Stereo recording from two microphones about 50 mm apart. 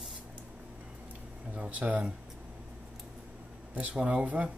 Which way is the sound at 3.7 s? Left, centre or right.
Right.